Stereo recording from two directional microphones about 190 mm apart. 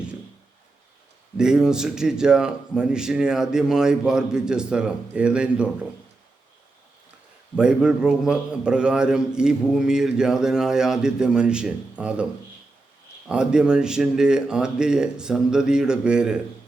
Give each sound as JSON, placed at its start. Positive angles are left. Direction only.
{"t": 1.4, "sound": "a man's voice", "side_deg": -5}
{"t": 7.5, "sound": "a man's voice", "side_deg": -5}